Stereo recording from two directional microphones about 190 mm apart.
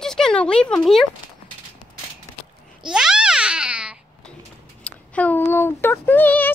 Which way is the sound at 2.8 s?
5° right (ahead or behind).